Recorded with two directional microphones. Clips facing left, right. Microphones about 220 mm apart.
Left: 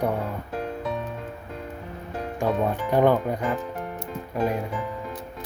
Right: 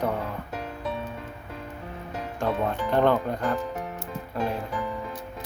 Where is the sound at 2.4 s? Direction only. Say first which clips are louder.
Left 2 dB; 10° left (ahead or behind).